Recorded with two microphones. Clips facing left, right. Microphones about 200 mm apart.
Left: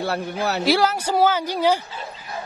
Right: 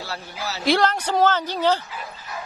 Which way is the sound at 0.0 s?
60° left (ahead or behind).